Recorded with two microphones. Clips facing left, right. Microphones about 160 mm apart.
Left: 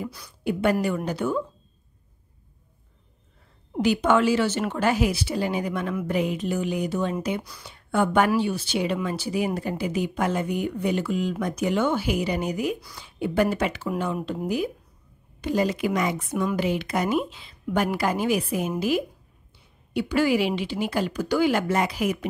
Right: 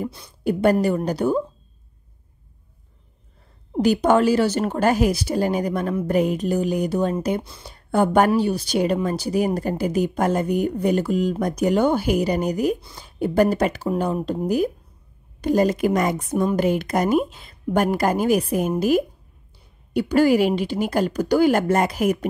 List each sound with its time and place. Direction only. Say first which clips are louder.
0.4 s speech: right 5 dB; 40° right (ahead or behind)
3.7 s a woman's voice: right 4 dB; 40° right (ahead or behind)